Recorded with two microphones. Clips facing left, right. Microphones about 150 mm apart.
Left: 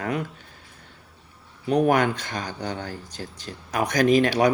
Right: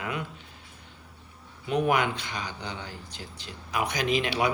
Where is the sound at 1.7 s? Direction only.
40° left (ahead or behind).